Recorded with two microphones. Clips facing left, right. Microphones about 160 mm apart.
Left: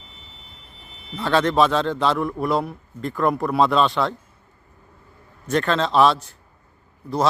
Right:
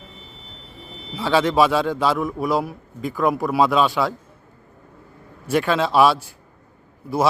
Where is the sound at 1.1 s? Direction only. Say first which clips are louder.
Right 1 dB; 5° right (ahead or behind).